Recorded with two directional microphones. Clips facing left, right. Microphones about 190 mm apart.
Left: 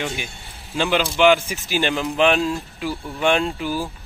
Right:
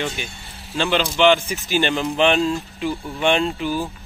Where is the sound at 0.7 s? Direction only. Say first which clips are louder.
Even; 10° left (ahead or behind).